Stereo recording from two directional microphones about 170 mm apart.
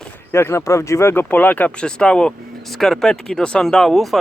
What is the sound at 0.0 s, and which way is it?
Speech, 15° left (ahead or behind).